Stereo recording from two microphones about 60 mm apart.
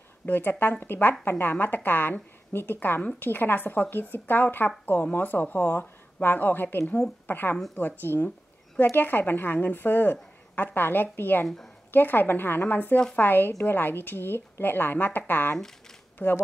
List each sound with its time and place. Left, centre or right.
0.2 s speech: left